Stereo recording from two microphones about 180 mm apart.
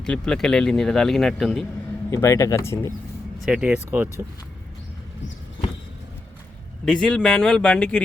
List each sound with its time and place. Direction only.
0.0 s speech: 5° left (ahead or behind)
2.0 s speech: 15° left (ahead or behind)
3.4 s speech: 5° right (ahead or behind)
6.8 s speech: 5° left (ahead or behind)